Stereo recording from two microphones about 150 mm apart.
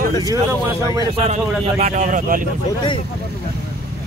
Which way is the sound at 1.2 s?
45° right (ahead or behind).